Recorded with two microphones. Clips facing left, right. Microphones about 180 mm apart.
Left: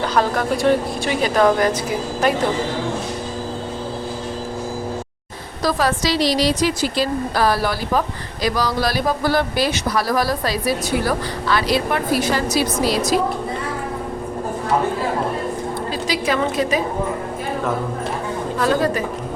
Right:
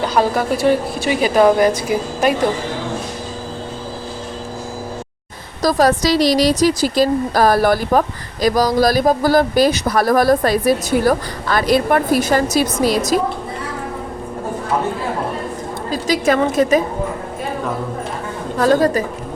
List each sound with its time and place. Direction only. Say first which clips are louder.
0.1 s a woman's voice: right 2 dB; 10° right (ahead or behind)
5.6 s a woman's voice: right 5 dB; 40° right (ahead or behind)
15.9 s a woman's voice: right 7 dB; 45° right (ahead or behind)
18.6 s a woman's voice: right 5 dB; 40° right (ahead or behind)